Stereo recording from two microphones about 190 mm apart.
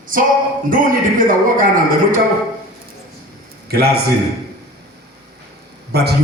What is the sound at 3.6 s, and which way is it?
Speech, 55° right (ahead or behind).